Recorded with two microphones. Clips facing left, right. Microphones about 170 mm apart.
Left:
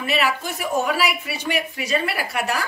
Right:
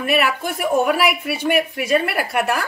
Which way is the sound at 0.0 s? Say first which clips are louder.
Right 3 dB; 55° right (ahead or behind).